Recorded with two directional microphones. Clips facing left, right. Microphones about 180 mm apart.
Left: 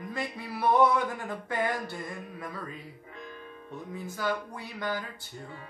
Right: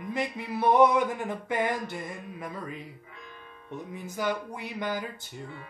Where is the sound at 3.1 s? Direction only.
40° left (ahead or behind).